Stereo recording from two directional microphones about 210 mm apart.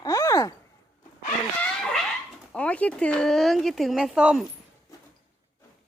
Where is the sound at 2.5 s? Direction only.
5° left (ahead or behind).